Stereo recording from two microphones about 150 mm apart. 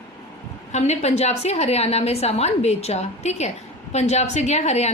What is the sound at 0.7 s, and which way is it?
A woman's voice, 50° left (ahead or behind).